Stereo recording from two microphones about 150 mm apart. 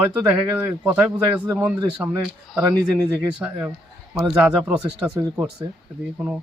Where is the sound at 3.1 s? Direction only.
15° right (ahead or behind).